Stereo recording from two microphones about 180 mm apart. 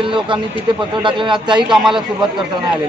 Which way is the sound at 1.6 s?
Centre (ahead or behind).